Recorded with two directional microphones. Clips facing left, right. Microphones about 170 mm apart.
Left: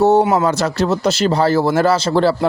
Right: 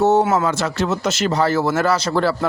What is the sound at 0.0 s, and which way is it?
A man's voice, 35° left (ahead or behind).